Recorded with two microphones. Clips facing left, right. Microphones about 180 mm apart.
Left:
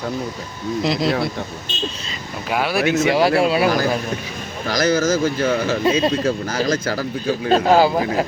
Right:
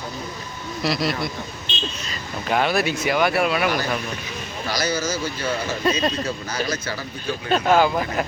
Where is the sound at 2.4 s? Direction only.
5° left (ahead or behind).